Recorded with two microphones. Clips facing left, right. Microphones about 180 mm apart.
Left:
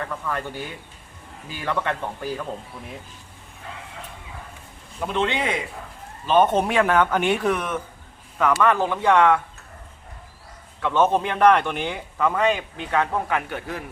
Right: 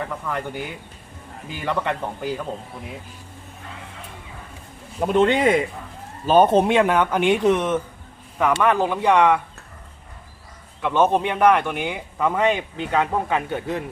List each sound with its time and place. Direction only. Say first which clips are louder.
0.0 s speech: right 1 dB; 15° right (ahead or behind)
1.6 s speech: right 1 dB; 15° right (ahead or behind)
5.0 s speech: right 7 dB; 45° right (ahead or behind)
6.2 s speech: right 3 dB; 35° right (ahead or behind); by 9.4 s 15° right (ahead or behind)
10.8 s speech: right 1 dB; 15° right (ahead or behind)